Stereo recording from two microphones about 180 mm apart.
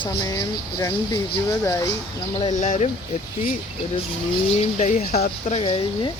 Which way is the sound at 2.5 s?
45° left (ahead or behind).